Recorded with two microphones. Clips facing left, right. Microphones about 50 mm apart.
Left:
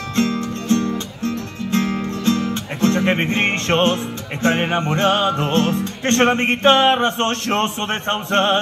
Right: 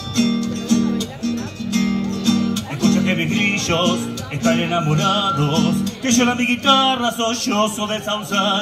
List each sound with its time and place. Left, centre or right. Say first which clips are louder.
0.1 s music: right 2 dB; left